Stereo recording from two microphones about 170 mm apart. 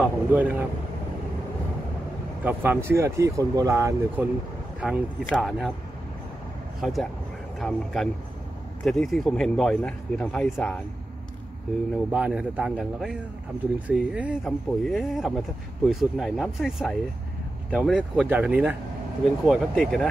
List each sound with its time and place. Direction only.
0.0 s a sound: 10° right (ahead or behind)
2.4 s speech: 10° right (ahead or behind)
6.8 s speech: centre (ahead or behind)
12.1 s speech: 10° right (ahead or behind)